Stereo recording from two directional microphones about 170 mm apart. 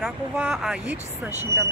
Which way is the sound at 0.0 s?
5° right (ahead or behind).